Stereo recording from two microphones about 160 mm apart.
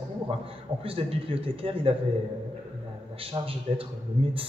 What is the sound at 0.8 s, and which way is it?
A man's voice, 35° right (ahead or behind).